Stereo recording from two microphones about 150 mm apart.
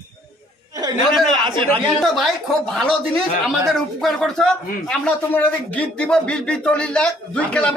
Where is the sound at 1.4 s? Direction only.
35° right (ahead or behind).